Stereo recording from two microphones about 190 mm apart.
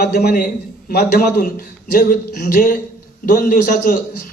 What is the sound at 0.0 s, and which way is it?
A man's voice, 55° left (ahead or behind).